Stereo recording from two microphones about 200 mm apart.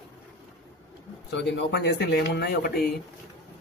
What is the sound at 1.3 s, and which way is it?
Speech, 60° left (ahead or behind).